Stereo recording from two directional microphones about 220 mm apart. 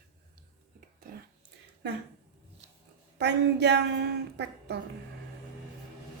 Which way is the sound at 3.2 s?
50° right (ahead or behind).